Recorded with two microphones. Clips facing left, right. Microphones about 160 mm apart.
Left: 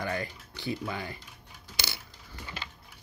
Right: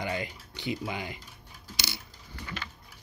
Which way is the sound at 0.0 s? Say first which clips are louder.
Even; 20° right (ahead or behind).